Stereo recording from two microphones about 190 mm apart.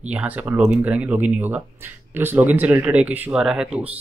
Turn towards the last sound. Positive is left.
turn(degrees=-5)  # may be behind; listen again after turning